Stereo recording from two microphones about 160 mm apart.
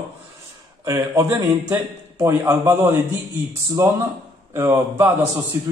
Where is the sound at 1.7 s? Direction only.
10° right (ahead or behind).